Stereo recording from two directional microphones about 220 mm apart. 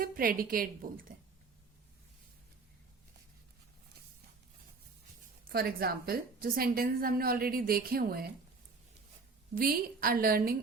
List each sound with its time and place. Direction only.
0.0 s a woman's voice: 40° right (ahead or behind)
5.5 s a woman's voice: 45° right (ahead or behind)
9.6 s a woman's voice: 40° right (ahead or behind)